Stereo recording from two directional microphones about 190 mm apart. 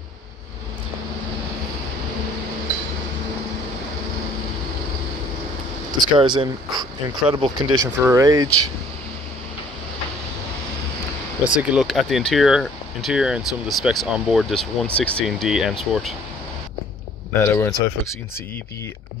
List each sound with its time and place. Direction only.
5.9 s speech: 25° right (ahead or behind)
11.5 s speech: 5° right (ahead or behind)
17.3 s speech: 10° left (ahead or behind)